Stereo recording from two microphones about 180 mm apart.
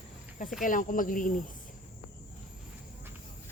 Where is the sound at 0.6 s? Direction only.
50° left (ahead or behind).